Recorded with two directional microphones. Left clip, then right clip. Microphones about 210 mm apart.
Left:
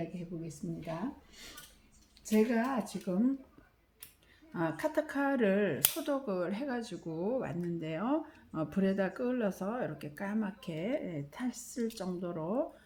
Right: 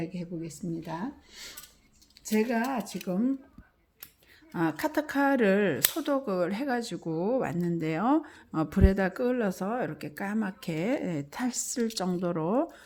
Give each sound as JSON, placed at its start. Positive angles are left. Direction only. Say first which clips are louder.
{"t": 0.0, "sound": "a woman's voice", "louder": "right 5 dB", "side_deg": -40}
{"t": 2.2, "sound": "speech", "louder": "right 2 dB", "side_deg": -40}
{"t": 4.5, "sound": "a woman's voice", "louder": "right 4 dB", "side_deg": -45}